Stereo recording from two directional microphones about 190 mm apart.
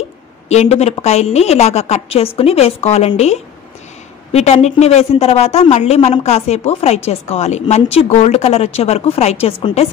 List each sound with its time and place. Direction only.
0.5 s a woman's voice: 35° left (ahead or behind)